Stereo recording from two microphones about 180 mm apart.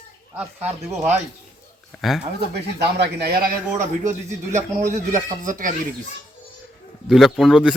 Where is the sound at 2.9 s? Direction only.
65° right (ahead or behind).